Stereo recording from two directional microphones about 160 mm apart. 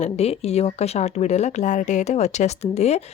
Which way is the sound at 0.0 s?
40° left (ahead or behind).